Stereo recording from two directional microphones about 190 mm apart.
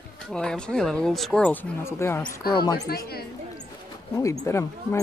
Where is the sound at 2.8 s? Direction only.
55° left (ahead or behind).